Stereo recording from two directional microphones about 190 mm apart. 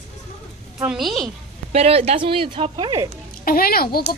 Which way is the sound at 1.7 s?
35° right (ahead or behind).